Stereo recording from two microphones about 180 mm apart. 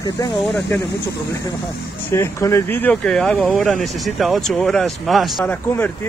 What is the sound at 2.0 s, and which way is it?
Speech, 15° left (ahead or behind).